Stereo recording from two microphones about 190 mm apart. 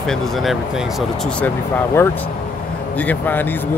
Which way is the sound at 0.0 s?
5° left (ahead or behind).